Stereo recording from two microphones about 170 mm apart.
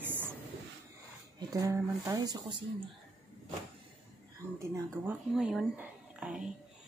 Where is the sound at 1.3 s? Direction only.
20° right (ahead or behind).